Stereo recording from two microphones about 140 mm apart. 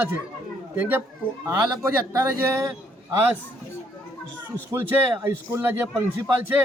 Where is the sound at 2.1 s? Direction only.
20° right (ahead or behind).